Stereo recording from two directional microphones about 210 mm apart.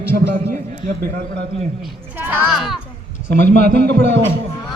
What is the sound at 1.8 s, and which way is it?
Speech, 10° right (ahead or behind).